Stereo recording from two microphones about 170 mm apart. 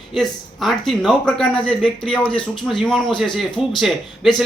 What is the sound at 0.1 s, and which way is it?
Speech, centre (ahead or behind).